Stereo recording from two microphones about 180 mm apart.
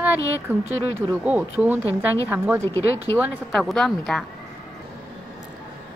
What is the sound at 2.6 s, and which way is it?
Speech, 15° left (ahead or behind).